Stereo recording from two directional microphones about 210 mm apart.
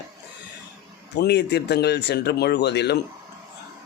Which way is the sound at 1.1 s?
55° left (ahead or behind).